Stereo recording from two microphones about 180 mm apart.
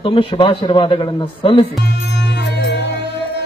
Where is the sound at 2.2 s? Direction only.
70° left (ahead or behind).